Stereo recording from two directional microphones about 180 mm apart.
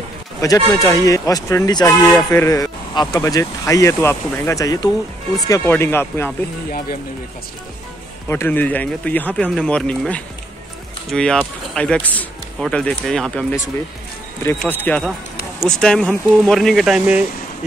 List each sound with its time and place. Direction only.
0.4 s speech: 20° left (ahead or behind)
8.3 s speech: 10° left (ahead or behind)
14.6 s speech: 10° left (ahead or behind)